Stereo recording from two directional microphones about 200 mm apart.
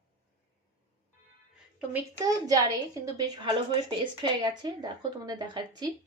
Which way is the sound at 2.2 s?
20° right (ahead or behind).